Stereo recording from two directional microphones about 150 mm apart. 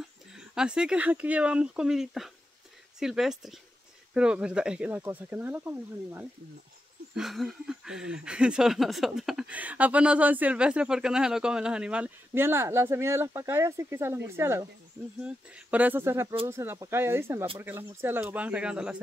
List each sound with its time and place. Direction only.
0.3 s speech: 5° right (ahead or behind)
7.2 s speech: centre (ahead or behind); by 14.7 s 15° right (ahead or behind)
15.1 s speech: 5° right (ahead or behind)